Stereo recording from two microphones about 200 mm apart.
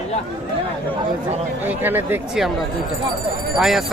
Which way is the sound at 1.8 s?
10° right (ahead or behind).